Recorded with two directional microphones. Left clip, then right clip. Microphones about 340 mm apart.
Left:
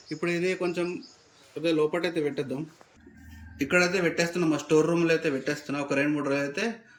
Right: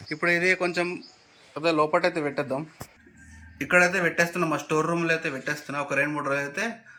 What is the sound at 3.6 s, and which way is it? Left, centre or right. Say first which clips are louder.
Speech: right 3 dB; centre.